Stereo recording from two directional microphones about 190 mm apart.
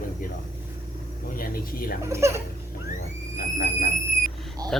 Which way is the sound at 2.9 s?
50° left (ahead or behind).